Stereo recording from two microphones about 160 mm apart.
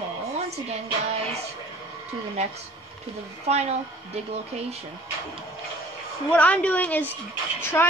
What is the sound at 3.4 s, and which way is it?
Speech, 40° right (ahead or behind).